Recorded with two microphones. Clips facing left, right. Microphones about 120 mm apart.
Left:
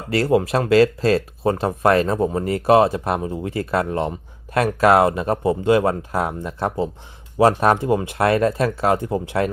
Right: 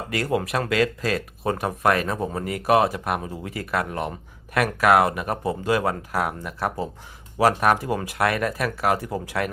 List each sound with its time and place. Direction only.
0.1 s speech: 30° left (ahead or behind)